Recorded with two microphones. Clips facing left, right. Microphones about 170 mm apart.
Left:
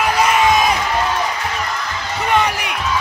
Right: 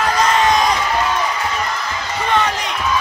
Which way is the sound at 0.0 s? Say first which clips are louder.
Left 1 dB; 10° left (ahead or behind).